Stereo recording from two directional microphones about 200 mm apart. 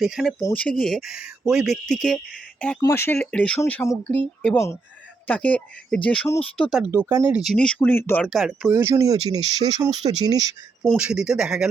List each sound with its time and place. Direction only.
0.0 s speech: centre (ahead or behind); by 10.4 s 20° right (ahead or behind)
10.8 s speech: 5° right (ahead or behind)